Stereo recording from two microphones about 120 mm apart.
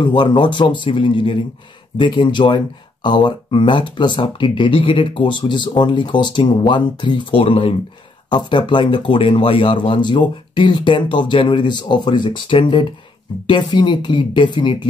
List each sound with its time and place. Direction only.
0.0 s speech: 40° left (ahead or behind)
8.3 s speech: 40° left (ahead or behind)